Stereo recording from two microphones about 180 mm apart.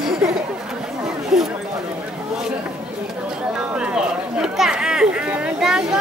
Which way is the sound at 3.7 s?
5° right (ahead or behind).